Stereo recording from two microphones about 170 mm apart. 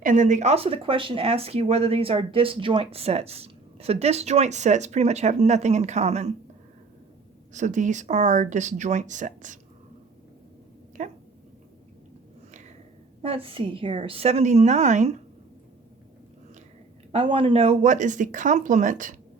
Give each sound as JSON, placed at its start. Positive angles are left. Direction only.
{"t": 0.0, "sound": "speech", "side_deg": -50}
{"t": 7.5, "sound": "speech", "side_deg": -45}
{"t": 11.0, "sound": "dog", "side_deg": -45}
{"t": 13.2, "sound": "speech", "side_deg": -35}
{"t": 17.1, "sound": "speech", "side_deg": -30}